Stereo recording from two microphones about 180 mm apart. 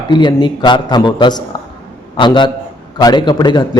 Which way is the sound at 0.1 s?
25° left (ahead or behind).